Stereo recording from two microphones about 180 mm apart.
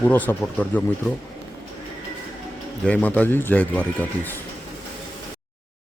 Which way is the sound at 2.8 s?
10° left (ahead or behind).